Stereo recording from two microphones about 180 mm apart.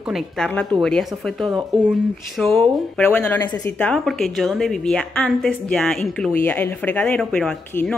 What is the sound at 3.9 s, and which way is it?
A woman's voice, centre (ahead or behind).